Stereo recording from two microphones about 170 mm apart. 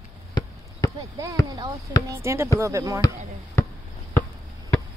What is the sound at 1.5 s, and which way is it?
Speech, 20° right (ahead or behind).